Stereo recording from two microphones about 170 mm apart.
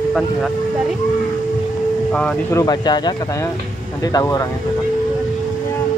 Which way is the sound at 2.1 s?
5° left (ahead or behind).